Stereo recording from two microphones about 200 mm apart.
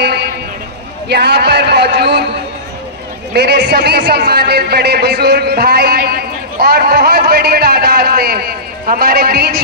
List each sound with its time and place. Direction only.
0.0 s a sound: 55° right (ahead or behind)
1.0 s speech: 55° right (ahead or behind)
3.3 s speech: 55° right (ahead or behind)